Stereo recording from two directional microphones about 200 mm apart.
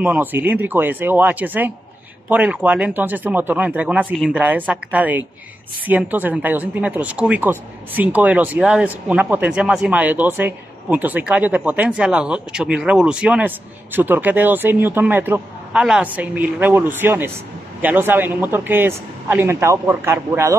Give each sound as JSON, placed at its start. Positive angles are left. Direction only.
{"t": 0.0, "sound": "speech", "side_deg": -10}